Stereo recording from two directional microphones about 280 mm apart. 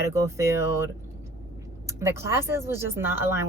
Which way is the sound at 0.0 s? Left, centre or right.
Centre.